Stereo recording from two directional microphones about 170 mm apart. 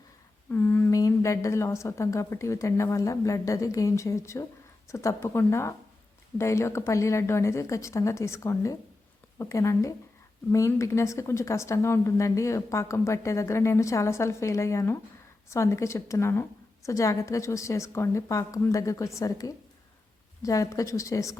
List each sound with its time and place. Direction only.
0.5 s speech: 10° left (ahead or behind)